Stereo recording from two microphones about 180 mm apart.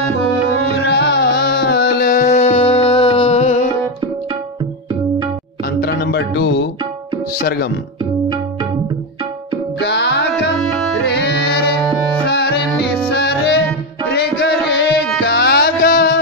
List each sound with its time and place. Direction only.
0.7 s music: 70° left (ahead or behind); by 2.3 s 50° left (ahead or behind)
2.3 s music: 35° left (ahead or behind)
5.8 s music: 65° left (ahead or behind)
7.3 s speech: 60° left (ahead or behind)
9.8 s music: 70° left (ahead or behind)
11.1 s music: 65° left (ahead or behind)